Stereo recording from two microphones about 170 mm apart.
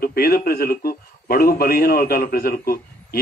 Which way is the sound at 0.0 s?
65° left (ahead or behind).